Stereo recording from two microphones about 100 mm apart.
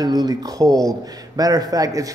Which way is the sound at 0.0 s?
40° right (ahead or behind).